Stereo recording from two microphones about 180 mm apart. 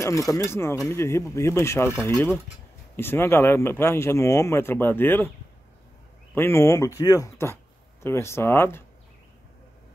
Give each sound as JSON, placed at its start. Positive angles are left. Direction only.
{"t": 0.0, "sound": "speech", "side_deg": 20}
{"t": 6.3, "sound": "speech", "side_deg": 15}